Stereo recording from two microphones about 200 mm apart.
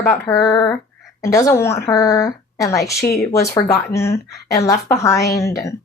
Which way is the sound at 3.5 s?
15° left (ahead or behind).